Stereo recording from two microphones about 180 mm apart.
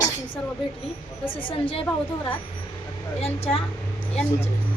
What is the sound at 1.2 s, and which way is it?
Speech, 30° left (ahead or behind).